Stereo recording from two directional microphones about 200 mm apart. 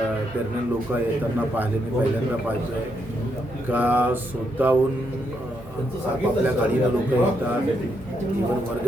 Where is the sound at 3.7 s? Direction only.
10° right (ahead or behind).